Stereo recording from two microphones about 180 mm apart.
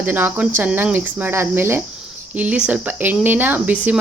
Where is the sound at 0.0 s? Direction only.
10° right (ahead or behind).